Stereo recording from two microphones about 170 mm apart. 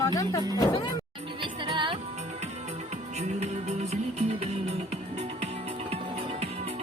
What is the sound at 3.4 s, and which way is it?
Music, 40° right (ahead or behind).